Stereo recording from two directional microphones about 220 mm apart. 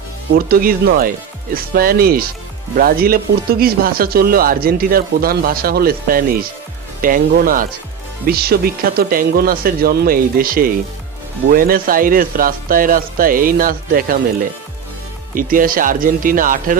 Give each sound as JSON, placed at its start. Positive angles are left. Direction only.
{"t": 0.3, "sound": "speech", "side_deg": -45}
{"t": 15.4, "sound": "speech", "side_deg": -40}